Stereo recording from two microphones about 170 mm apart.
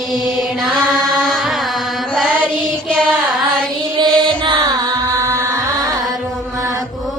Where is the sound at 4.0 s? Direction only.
30° right (ahead or behind).